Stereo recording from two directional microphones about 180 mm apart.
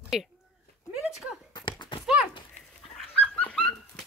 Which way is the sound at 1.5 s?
25° left (ahead or behind).